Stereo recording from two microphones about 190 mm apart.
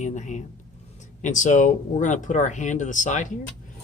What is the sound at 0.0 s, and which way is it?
Speech, 40° left (ahead or behind).